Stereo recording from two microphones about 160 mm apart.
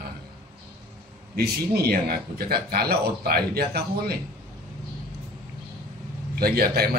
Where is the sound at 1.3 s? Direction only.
80° right.